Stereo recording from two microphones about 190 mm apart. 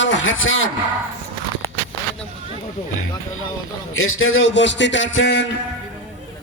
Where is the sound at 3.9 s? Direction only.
90° left.